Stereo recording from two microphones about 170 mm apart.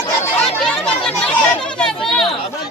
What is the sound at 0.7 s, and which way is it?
Chatter, 5° left (ahead or behind).